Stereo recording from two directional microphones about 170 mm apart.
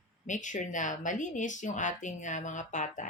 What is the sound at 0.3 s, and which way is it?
A woman's voice, 45° left (ahead or behind).